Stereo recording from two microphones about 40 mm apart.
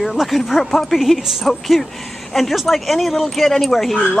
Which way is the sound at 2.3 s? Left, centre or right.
Centre.